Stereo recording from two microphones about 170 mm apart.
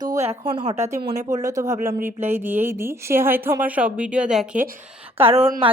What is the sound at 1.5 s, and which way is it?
A woman's voice, 20° right (ahead or behind).